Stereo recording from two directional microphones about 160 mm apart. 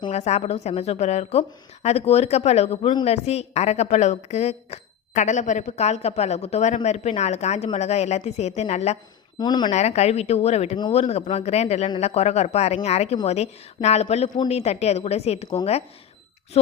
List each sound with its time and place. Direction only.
0.1 s a woman's voice: 45° left (ahead or behind)
9.4 s speech: 25° left (ahead or behind)
9.7 s a woman's voice: 40° left (ahead or behind)